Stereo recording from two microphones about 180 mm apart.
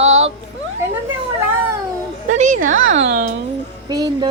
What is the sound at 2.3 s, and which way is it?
A woman's voice, 45° right (ahead or behind).